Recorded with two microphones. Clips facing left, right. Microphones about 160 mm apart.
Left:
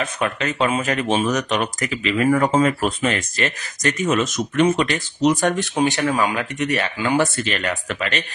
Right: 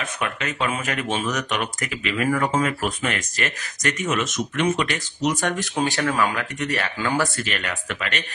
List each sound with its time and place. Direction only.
0.2 s speech: 30° left (ahead or behind)